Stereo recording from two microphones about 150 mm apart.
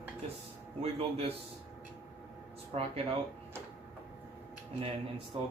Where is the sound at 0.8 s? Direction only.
40° right (ahead or behind).